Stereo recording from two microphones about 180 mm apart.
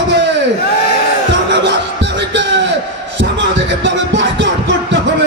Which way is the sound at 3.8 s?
90° right.